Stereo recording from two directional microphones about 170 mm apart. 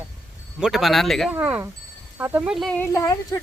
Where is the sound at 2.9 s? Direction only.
20° left (ahead or behind).